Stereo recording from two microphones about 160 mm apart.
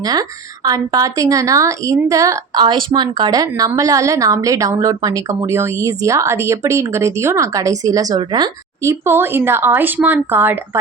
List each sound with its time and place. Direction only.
0.0 s a woman's voice: 25° right (ahead or behind)